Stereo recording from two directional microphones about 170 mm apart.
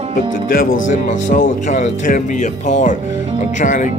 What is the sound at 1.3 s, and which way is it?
Speech, 50° left (ahead or behind).